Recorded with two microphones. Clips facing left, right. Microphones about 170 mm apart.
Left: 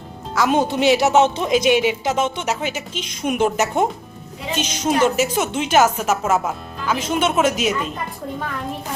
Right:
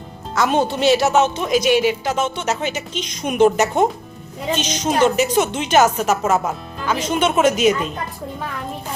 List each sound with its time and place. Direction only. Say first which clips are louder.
0.3 s a woman's voice: even; 10° left (ahead or behind)